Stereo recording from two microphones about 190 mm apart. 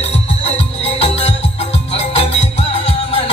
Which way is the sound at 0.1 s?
35° left (ahead or behind).